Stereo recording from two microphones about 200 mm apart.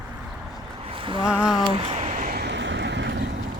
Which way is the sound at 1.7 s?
30° right (ahead or behind).